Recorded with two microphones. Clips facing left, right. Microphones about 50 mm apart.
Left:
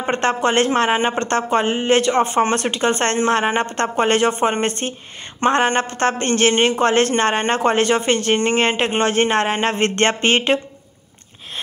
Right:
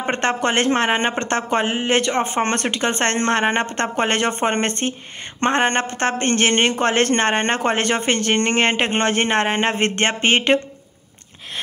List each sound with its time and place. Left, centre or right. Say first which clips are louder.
0.1 s speech: left 2 dB; right
2.4 s a woman's voice: left 2 dB; right